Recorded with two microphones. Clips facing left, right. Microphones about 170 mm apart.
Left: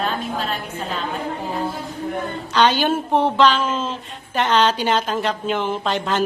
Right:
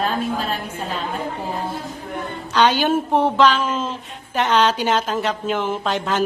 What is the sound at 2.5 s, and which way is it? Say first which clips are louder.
A woman's voice: right 1 dB; 10° right (ahead or behind).